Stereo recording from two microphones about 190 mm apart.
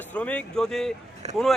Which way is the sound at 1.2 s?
35° right (ahead or behind).